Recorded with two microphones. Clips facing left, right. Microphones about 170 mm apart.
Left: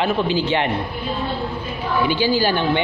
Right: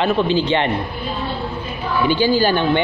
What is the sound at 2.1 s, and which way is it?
Speech, 50° right (ahead or behind).